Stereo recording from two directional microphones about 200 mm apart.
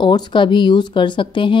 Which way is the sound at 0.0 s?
25° left (ahead or behind).